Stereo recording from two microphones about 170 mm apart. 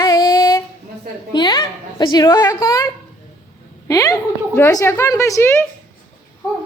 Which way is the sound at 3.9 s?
20° left (ahead or behind).